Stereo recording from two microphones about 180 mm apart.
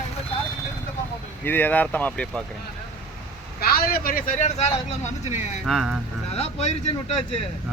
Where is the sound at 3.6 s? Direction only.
55° left (ahead or behind); by 5.3 s 40° left (ahead or behind).